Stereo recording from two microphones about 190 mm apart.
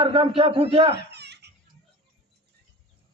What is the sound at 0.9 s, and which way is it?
Giggle, 60° right (ahead or behind).